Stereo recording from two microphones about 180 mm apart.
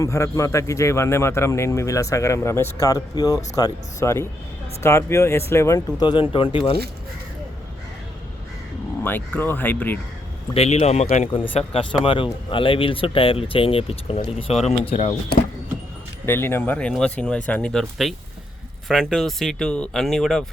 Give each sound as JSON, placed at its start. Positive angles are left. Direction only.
{"t": 0.0, "sound": "a man's voice", "side_deg": 15}
{"t": 9.0, "sound": "a man's voice", "side_deg": 10}
{"t": 10.5, "sound": "speech", "side_deg": 35}
{"t": 16.2, "sound": "a man's voice", "side_deg": 10}